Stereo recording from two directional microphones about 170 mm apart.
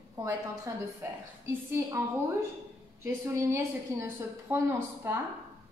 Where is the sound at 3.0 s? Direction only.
15° right (ahead or behind).